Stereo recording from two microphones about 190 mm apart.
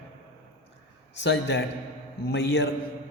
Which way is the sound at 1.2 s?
65° left (ahead or behind).